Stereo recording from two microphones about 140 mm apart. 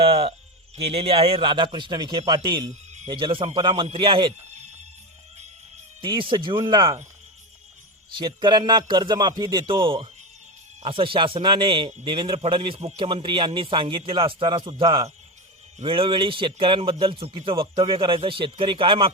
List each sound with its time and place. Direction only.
0.0 s a sound: 45° right (ahead or behind)
0.8 s a man's voice: 40° right (ahead or behind)
6.0 s a man's voice: 35° right (ahead or behind)
8.1 s a man's voice: 35° right (ahead or behind)